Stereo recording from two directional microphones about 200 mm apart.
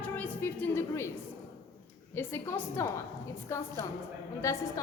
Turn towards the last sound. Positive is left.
turn(degrees=15)  # may be behind; listen again after turning